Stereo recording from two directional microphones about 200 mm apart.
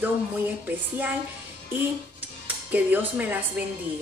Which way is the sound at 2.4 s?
10° right (ahead or behind).